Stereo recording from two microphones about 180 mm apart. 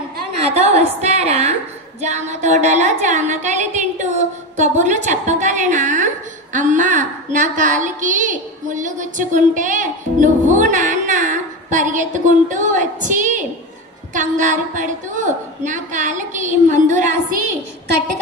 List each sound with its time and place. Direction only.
0.4 s a woman's voice: 35° right (ahead or behind)